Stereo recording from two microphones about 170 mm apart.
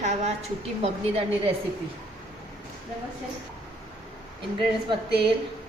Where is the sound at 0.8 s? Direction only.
35° right (ahead or behind).